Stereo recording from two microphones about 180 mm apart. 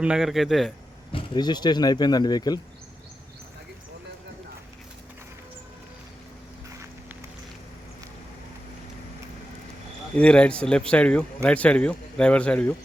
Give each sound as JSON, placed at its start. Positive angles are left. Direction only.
{"t": 0.0, "sound": "a man's voice", "side_deg": -5}
{"t": 1.1, "sound": "speech", "side_deg": 25}
{"t": 10.2, "sound": "a man's voice", "side_deg": 5}